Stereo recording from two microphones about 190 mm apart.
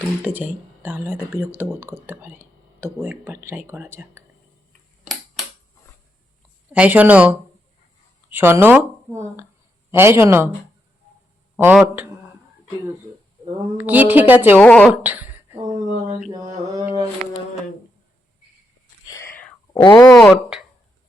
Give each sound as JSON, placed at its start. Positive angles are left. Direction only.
{"t": 0.2, "sound": "speech", "side_deg": -10}
{"t": 6.7, "sound": "speech", "side_deg": -10}
{"t": 11.5, "sound": "speech", "side_deg": -10}
{"t": 13.7, "sound": "speech", "side_deg": -10}
{"t": 14.6, "sound": "speech", "side_deg": 5}
{"t": 15.0, "sound": "a sound", "side_deg": -10}
{"t": 19.4, "sound": "whispering", "side_deg": 5}
{"t": 19.8, "sound": "speech", "side_deg": 20}